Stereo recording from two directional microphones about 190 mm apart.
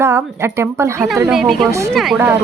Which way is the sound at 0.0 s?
15° right (ahead or behind).